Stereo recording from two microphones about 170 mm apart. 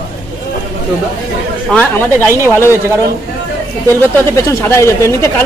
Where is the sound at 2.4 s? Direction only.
15° left (ahead or behind).